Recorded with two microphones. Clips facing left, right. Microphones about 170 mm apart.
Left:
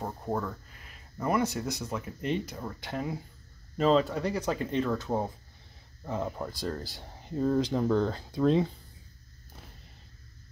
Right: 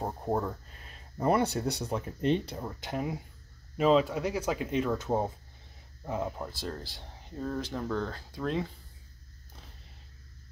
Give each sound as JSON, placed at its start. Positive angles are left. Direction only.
{"t": 0.0, "sound": "speech", "side_deg": -25}
{"t": 2.6, "sound": "speech", "side_deg": -15}
{"t": 4.9, "sound": "speech", "side_deg": -20}
{"t": 6.0, "sound": "speech", "side_deg": -5}
{"t": 7.2, "sound": "speech", "side_deg": 15}